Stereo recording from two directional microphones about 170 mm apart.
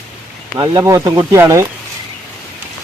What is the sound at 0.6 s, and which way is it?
Speech, 20° right (ahead or behind).